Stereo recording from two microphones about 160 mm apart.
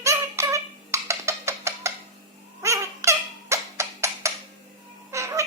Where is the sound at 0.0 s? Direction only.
20° right (ahead or behind).